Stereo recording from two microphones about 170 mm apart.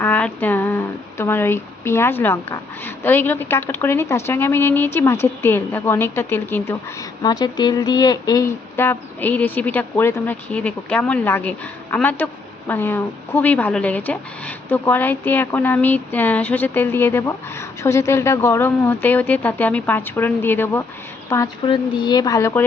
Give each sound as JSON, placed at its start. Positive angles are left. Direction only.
{"t": 0.0, "sound": "speech", "side_deg": 10}
{"t": 7.2, "sound": "a woman's voice", "side_deg": 25}